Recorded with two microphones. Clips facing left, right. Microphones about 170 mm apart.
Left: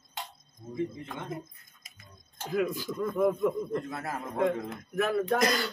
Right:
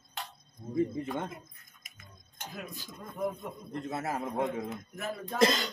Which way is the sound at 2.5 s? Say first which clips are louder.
Left 16 dB; 90° left.